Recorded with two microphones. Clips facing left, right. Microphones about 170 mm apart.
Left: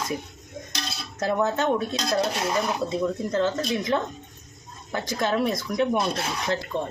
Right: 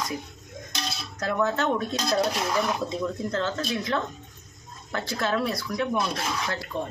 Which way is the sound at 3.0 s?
15° left (ahead or behind).